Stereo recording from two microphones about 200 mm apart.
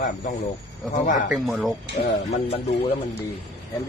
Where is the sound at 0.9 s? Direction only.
40° left (ahead or behind).